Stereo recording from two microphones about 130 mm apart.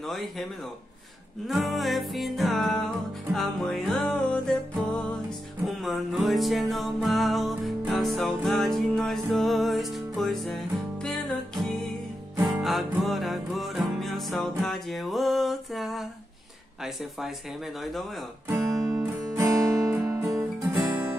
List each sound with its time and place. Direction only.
0.0 s music: centre (ahead or behind)
1.5 s music: centre (ahead or behind)
12.4 s music: centre (ahead or behind)
18.5 s music: 25° right (ahead or behind)